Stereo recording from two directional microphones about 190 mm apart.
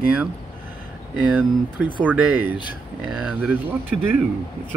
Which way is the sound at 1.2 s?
5° right (ahead or behind).